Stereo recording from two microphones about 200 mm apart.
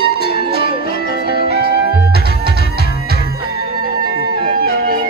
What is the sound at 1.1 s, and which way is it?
Music, 55° right (ahead or behind).